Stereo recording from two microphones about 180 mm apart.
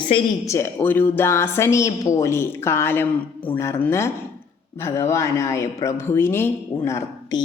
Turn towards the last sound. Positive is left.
turn(degrees=15)  # may be behind; listen again after turning